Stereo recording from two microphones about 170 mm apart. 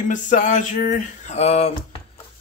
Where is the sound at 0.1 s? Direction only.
50° left (ahead or behind).